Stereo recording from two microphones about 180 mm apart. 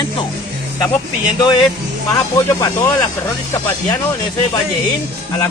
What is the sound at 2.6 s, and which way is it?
Speech, 25° left (ahead or behind).